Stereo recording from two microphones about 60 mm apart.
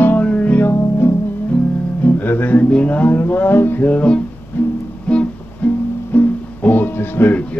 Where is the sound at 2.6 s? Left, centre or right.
Centre.